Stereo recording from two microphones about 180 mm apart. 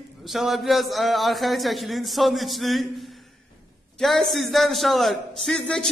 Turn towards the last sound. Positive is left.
turn(degrees=5)  # may be behind; listen again after turning